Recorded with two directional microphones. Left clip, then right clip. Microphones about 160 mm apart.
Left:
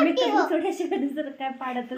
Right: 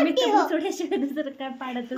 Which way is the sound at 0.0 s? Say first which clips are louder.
Right 1 dB; 90° right.